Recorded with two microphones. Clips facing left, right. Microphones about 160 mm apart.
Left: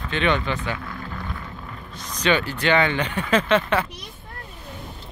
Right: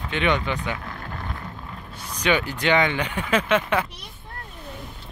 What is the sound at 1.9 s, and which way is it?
Speech, 10° right (ahead or behind).